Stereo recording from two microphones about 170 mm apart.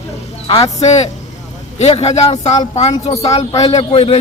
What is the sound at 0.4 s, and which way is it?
A man's voice, 35° left (ahead or behind).